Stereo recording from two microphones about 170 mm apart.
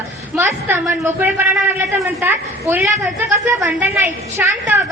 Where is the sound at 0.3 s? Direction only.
15° right (ahead or behind).